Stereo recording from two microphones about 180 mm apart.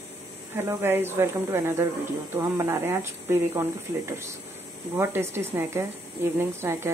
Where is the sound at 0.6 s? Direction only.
15° right (ahead or behind).